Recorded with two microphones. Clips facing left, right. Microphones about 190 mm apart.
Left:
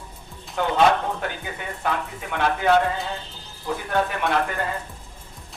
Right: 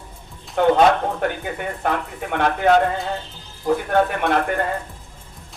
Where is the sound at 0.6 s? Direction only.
50° right (ahead or behind).